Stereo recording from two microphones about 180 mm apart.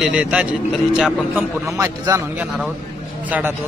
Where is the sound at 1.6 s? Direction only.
15° right (ahead or behind).